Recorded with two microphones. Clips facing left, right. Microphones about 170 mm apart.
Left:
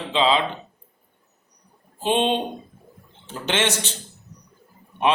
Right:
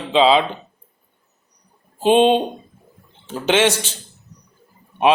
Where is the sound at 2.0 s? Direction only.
15° right (ahead or behind).